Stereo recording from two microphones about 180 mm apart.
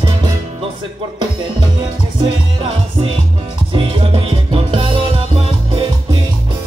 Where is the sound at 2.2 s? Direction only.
30° right (ahead or behind).